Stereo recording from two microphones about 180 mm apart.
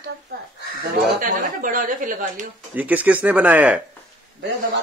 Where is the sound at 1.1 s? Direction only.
50° right (ahead or behind).